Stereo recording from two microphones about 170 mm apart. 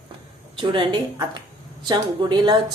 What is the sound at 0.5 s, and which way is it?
A woman's voice, 30° right (ahead or behind).